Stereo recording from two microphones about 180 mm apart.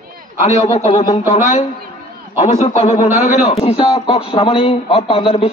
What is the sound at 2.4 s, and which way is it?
A man's voice, 35° left (ahead or behind).